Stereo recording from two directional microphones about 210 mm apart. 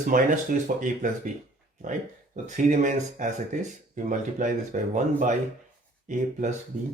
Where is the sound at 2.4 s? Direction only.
35° right (ahead or behind).